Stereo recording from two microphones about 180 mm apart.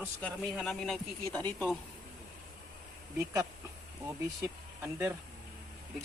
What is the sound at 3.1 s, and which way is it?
Speech, 20° right (ahead or behind).